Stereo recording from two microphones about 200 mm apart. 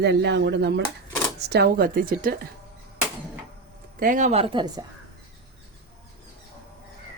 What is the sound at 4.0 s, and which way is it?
Speech, 40° right (ahead or behind).